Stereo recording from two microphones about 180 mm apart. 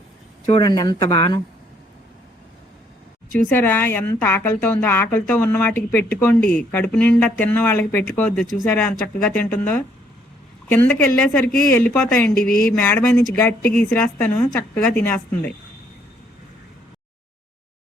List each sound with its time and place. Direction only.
0.5 s speech: 25° left (ahead or behind)
3.3 s a woman's voice: 10° left (ahead or behind)